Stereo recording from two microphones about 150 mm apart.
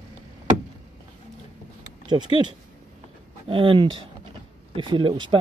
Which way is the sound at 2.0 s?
30° right (ahead or behind).